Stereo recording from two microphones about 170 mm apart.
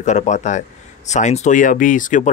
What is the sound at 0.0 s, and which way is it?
Speech, 45° left (ahead or behind).